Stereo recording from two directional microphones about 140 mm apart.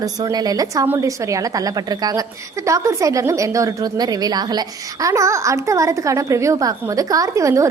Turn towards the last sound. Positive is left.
turn(degrees=-20)  # may be behind; listen again after turning